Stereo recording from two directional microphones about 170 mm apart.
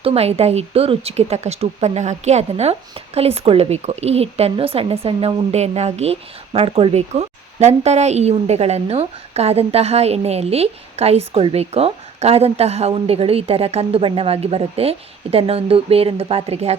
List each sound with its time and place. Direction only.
0.0 s speech: 35° right (ahead or behind)